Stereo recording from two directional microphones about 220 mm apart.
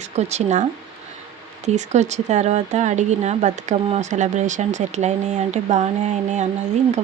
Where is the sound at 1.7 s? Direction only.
30° right (ahead or behind).